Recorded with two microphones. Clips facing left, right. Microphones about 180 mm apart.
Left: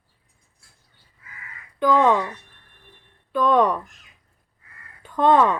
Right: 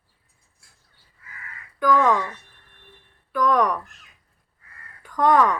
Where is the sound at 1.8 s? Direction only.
25° left (ahead or behind).